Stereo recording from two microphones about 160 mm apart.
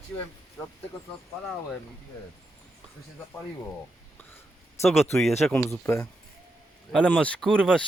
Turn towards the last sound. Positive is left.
turn(degrees=5)  # may be behind; listen again after turning